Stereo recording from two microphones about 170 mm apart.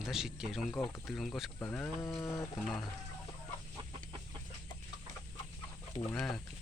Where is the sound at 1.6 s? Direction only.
15° left (ahead or behind).